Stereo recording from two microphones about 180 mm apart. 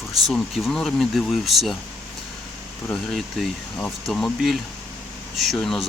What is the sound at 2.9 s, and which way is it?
Speech, centre (ahead or behind).